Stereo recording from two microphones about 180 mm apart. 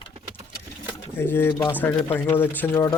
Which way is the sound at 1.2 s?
10° left (ahead or behind).